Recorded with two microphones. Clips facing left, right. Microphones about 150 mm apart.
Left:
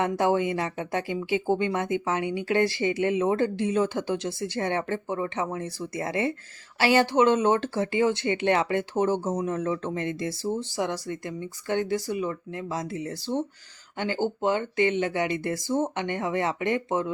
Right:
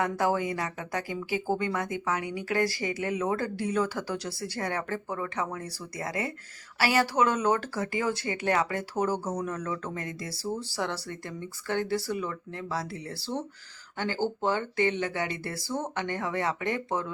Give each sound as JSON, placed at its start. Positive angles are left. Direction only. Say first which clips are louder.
{"t": 0.0, "sound": "speech", "louder": "left 4 dB", "side_deg": 25}